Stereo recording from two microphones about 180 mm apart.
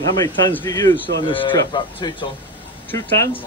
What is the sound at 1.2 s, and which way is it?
Speech, 30° left (ahead or behind).